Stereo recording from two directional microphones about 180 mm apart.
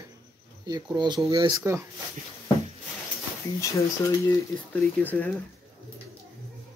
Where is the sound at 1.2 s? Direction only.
25° right (ahead or behind).